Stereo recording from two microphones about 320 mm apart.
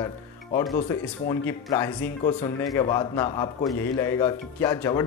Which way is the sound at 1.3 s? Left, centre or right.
Centre.